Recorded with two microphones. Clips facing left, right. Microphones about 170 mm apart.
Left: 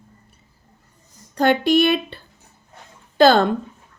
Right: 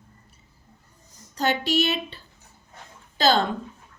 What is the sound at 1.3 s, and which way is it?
Speech, 55° left (ahead or behind).